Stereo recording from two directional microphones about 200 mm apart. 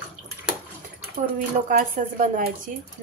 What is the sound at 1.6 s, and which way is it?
Speech, 45° right (ahead or behind).